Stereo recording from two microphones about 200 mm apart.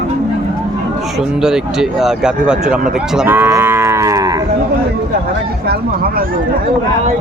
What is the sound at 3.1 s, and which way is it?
Cattle, 10° right (ahead or behind).